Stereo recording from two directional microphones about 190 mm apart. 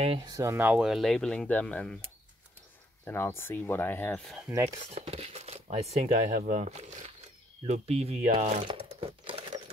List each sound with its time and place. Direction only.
0.0 s speech: 30° right (ahead or behind)
0.3 s speech: 15° right (ahead or behind); by 2.0 s 5° left (ahead or behind)
3.1 s speech: 10° left (ahead or behind)
4.5 s speech: 15° right (ahead or behind)
4.9 s speech: 30° right (ahead or behind)